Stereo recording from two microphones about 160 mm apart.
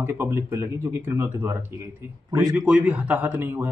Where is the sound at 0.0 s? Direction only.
15° right (ahead or behind).